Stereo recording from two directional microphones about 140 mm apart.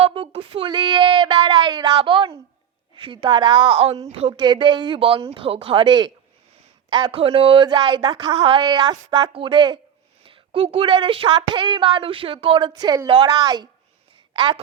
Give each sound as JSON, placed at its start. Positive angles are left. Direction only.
{"t": 0.0, "sound": "speech", "side_deg": -40}
{"t": 4.1, "sound": "speech", "side_deg": -45}
{"t": 4.4, "sound": "speech", "side_deg": -35}